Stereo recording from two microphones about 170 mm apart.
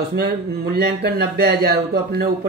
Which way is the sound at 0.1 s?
70° right (ahead or behind).